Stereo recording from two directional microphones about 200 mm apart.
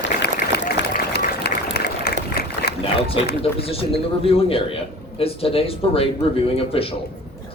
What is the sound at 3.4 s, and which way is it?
Speech, 30° left (ahead or behind).